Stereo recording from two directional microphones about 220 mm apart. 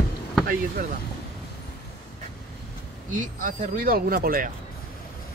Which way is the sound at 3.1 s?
35° right (ahead or behind).